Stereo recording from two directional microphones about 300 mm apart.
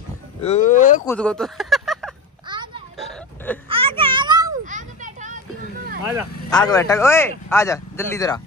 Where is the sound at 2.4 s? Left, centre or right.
Centre.